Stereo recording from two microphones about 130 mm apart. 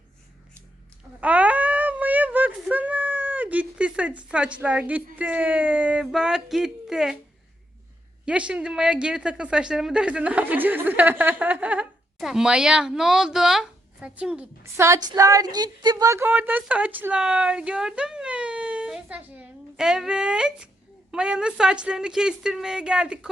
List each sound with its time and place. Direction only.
1.2 s a sound: 10° right (ahead or behind)
5.1 s speech: 10° right (ahead or behind)
8.2 s a woman's voice: 10° right (ahead or behind)
14.6 s a woman's voice: 20° right (ahead or behind)